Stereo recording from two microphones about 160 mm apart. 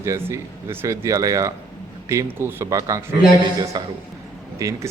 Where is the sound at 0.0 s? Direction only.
15° right (ahead or behind).